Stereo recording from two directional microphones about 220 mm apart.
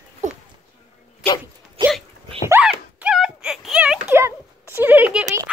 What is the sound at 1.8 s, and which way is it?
Hiccup, 25° right (ahead or behind).